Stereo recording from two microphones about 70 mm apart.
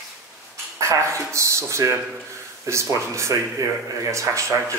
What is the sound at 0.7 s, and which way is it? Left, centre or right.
Speech, right.